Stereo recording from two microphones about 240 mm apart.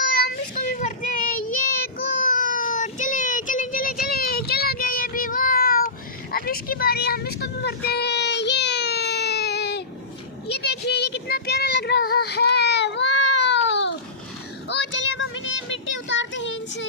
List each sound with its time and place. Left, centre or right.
0.2 s child singing: left
6.3 s vehicle: left
10.5 s child singing: left